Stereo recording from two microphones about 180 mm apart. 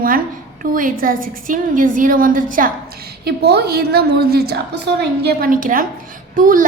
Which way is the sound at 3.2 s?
65° right (ahead or behind).